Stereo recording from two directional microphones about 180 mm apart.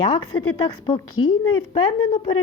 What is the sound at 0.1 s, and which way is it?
A woman's voice, 25° left (ahead or behind).